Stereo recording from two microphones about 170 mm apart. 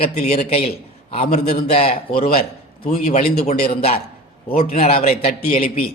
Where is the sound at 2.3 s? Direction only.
60° left (ahead or behind).